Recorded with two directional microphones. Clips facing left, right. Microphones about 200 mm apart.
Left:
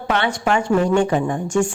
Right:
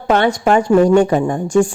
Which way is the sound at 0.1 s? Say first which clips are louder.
Right 6 dB; 40° right (ahead or behind).